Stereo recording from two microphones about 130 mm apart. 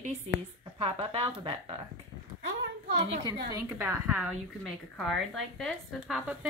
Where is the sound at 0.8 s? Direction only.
45° right (ahead or behind).